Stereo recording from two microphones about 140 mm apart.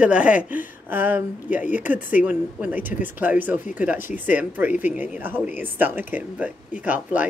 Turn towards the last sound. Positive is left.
turn(degrees=-10)  # may be behind; listen again after turning